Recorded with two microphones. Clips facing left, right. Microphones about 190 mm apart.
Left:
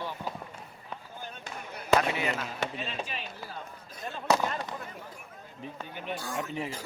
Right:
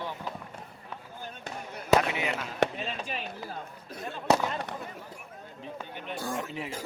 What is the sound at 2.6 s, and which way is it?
Chop, 50° right (ahead or behind).